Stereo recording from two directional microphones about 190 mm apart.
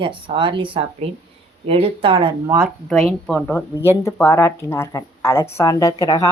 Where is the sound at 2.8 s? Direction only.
Centre (ahead or behind).